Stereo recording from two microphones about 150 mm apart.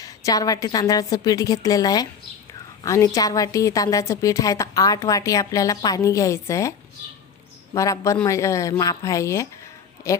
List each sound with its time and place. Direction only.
0.0 s a woman's voice: 20° left (ahead or behind)